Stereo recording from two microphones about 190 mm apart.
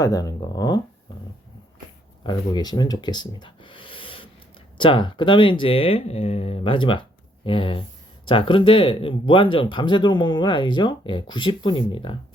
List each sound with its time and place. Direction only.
0.0 s speech: 20° left (ahead or behind)
2.2 s speech: 20° left (ahead or behind)